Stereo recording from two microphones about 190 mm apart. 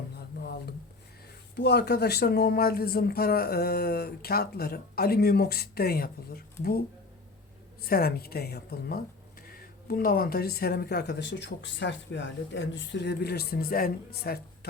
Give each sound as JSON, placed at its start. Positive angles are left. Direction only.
{"t": 0.2, "sound": "a sound", "side_deg": 60}
{"t": 1.5, "sound": "speech", "side_deg": 60}
{"t": 7.8, "sound": "speech", "side_deg": 55}